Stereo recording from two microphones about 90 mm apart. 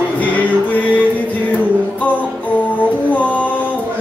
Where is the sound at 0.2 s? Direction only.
15° left (ahead or behind).